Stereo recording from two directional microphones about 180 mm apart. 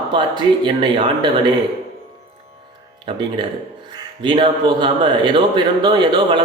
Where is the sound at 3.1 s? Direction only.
25° right (ahead or behind).